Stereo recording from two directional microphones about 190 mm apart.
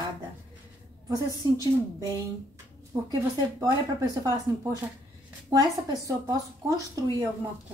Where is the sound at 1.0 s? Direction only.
20° right (ahead or behind).